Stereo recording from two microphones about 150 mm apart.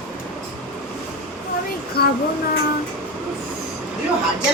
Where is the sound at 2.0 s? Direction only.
90° left.